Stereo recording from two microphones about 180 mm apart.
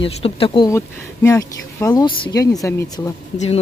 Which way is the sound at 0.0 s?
30° left (ahead or behind).